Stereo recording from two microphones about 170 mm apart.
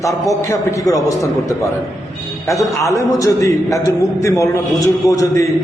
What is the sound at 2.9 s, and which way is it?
A man's voice, 20° left (ahead or behind).